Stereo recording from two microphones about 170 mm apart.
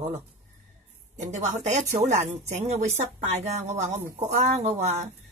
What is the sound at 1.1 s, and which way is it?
A woman's voice, 45° right (ahead or behind).